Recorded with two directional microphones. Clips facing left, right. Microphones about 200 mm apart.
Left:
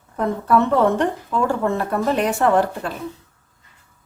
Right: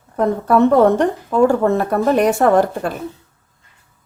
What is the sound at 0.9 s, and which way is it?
Speech, 40° right (ahead or behind).